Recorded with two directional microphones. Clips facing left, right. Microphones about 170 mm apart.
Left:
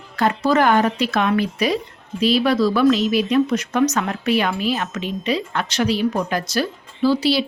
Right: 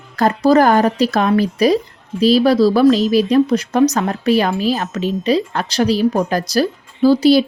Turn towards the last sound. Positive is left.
turn(degrees=-45)  # may be behind; listen again after turning